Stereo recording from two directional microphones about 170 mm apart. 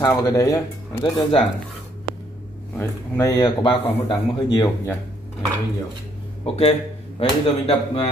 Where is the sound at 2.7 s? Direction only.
20° left (ahead or behind).